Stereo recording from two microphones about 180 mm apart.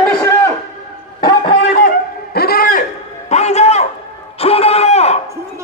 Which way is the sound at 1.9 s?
55° left (ahead or behind).